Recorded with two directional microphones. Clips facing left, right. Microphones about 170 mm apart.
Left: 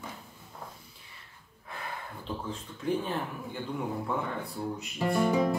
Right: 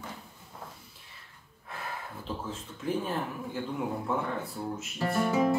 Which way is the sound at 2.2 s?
5° right (ahead or behind).